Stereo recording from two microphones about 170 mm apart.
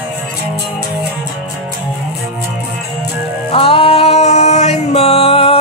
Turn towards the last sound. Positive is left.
turn(degrees=35)  # may be behind; listen again after turning